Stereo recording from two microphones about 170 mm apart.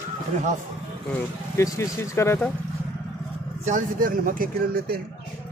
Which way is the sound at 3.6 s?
50° right (ahead or behind).